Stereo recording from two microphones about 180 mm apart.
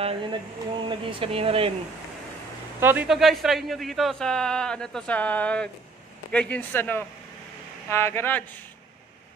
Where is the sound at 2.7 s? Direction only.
10° right (ahead or behind); by 8.6 s 10° left (ahead or behind).